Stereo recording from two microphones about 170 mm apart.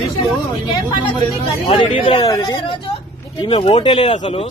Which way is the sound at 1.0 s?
30° left (ahead or behind).